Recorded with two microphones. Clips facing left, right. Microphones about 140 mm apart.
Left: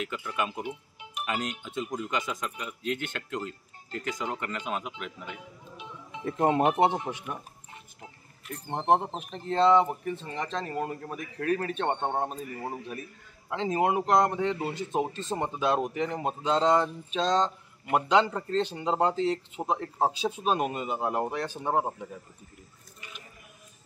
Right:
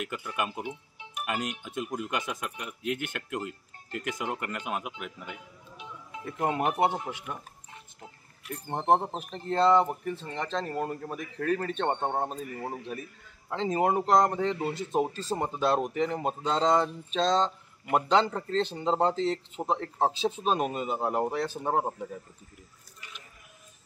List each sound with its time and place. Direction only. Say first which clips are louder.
0.0 s speech: left 1 dB; 10° right (ahead or behind)
6.2 s speech: left 4 dB; 25° left (ahead or behind)
8.6 s a man's voice: even; centre (ahead or behind)